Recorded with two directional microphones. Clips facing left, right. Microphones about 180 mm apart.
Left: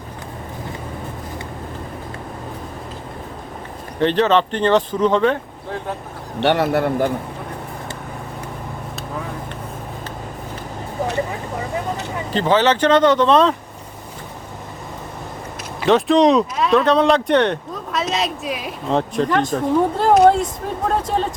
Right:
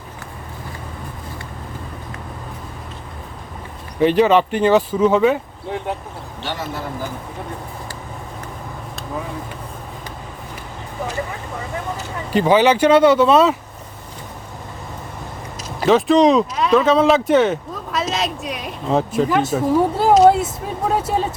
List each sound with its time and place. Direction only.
4.0 s speech: 10° right (ahead or behind)
6.4 s a man's voice: 65° left (ahead or behind)
12.3 s speech: 10° right (ahead or behind)
15.9 s speech: centre (ahead or behind)